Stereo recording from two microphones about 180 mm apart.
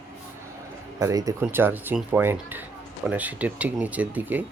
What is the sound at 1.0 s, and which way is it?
Speech, 20° right (ahead or behind).